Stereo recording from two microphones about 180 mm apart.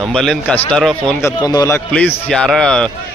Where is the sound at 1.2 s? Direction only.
20° left (ahead or behind).